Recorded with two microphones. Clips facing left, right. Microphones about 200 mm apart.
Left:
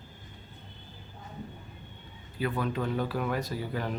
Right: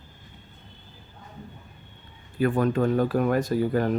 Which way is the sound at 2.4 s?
50° right (ahead or behind).